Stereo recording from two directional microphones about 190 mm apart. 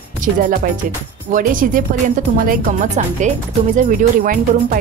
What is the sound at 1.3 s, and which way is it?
Speech, 45° right (ahead or behind).